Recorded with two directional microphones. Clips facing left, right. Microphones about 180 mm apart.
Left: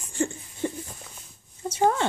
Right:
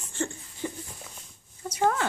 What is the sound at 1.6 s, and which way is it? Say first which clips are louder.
Speech: left 3 dB; 25° left (ahead or behind).